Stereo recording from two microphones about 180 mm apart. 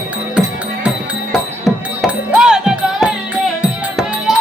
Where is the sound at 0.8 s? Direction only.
Centre (ahead or behind).